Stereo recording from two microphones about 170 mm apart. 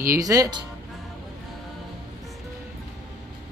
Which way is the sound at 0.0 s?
20° right (ahead or behind).